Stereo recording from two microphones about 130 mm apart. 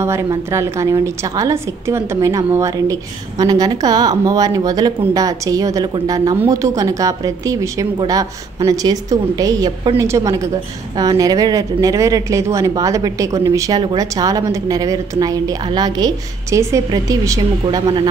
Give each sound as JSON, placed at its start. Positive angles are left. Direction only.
{"t": 0.5, "sound": "speech", "side_deg": -20}